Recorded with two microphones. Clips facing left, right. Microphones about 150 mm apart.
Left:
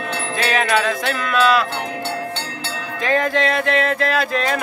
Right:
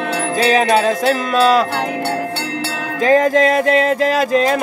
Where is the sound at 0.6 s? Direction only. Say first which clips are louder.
Right 6 dB; 35° right (ahead or behind).